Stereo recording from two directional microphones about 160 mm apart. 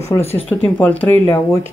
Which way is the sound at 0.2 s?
40° left (ahead or behind).